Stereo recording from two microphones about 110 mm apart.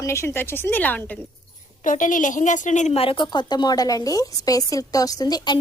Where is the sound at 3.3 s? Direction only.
40° left (ahead or behind).